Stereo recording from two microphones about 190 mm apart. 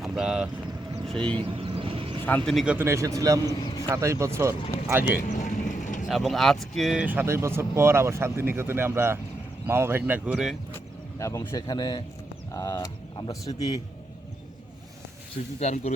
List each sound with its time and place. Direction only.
0.0 s speech: 5° right (ahead or behind)
1.3 s vehicle: 25° right (ahead or behind)
2.2 s speech: 5° left (ahead or behind)
2.7 s speech: 15° right (ahead or behind)
5.3 s vehicle: 40° left (ahead or behind)
6.1 s speech: centre (ahead or behind)
11.2 s a man's voice: 15° left (ahead or behind)
15.5 s speech: 35° left (ahead or behind)